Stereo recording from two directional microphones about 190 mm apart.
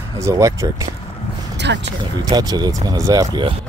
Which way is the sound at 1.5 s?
65° right (ahead or behind).